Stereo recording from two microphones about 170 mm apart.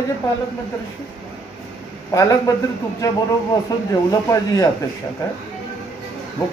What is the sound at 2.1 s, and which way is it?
Speech, 20° left (ahead or behind).